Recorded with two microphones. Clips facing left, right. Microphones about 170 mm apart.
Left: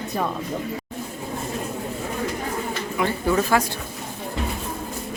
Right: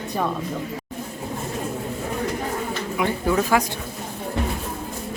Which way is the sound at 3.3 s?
5° right (ahead or behind).